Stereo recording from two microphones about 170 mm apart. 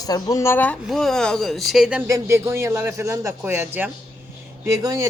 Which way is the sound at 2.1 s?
15° right (ahead or behind).